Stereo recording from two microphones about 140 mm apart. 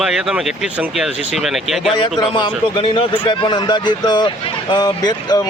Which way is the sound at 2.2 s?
30° left (ahead or behind).